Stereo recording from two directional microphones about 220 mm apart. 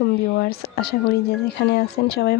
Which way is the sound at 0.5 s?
45° left (ahead or behind).